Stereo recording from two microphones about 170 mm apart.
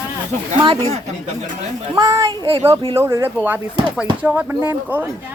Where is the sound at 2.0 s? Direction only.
20° right (ahead or behind).